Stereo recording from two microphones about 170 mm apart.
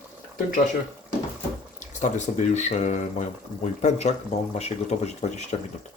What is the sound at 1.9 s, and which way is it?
Speech, 45° left (ahead or behind).